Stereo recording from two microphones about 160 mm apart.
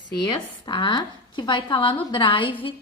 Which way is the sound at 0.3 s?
30° left (ahead or behind).